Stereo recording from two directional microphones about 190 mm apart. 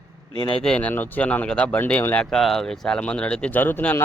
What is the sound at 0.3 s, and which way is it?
Speech, 25° left (ahead or behind).